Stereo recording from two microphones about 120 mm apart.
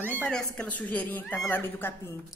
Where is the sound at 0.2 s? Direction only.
10° left (ahead or behind).